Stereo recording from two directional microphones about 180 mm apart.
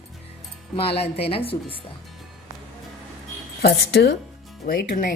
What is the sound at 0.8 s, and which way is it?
Speech, 35° left (ahead or behind).